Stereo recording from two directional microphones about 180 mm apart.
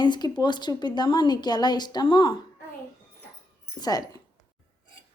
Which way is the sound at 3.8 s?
20° left (ahead or behind).